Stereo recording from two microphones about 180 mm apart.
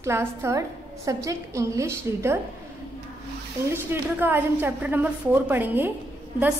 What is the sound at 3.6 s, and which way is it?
A woman's voice, 15° right (ahead or behind).